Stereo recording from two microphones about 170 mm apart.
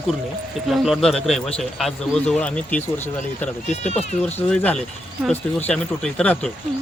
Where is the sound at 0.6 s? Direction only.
Centre (ahead or behind).